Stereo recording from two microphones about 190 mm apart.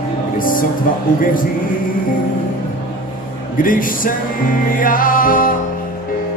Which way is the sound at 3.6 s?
45° left (ahead or behind).